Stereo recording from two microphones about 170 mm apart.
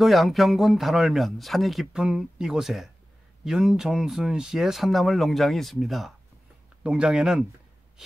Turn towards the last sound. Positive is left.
turn(degrees=-5)  # may be behind; listen again after turning